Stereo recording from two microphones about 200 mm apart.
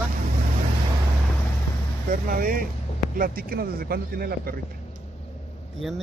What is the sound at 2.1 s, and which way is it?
Speech, 45° right (ahead or behind).